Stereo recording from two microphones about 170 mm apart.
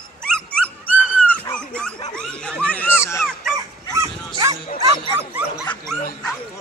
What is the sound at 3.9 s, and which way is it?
Dog, 20° right (ahead or behind).